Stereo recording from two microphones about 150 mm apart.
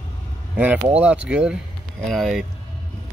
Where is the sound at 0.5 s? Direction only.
10° right (ahead or behind).